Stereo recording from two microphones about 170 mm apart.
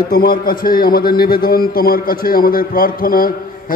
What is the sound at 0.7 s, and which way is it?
A man's voice, 60° left (ahead or behind).